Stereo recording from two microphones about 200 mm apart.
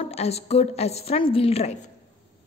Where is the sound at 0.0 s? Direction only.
30° left (ahead or behind).